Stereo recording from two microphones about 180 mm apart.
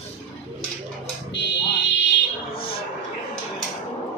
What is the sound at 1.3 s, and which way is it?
Fire alarm, 75° left (ahead or behind).